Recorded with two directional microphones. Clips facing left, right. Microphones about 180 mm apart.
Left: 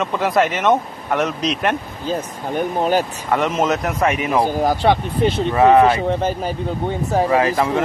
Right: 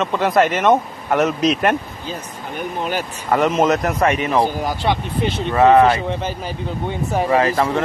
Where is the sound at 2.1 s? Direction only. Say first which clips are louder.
Left 8 dB; 45° left (ahead or behind).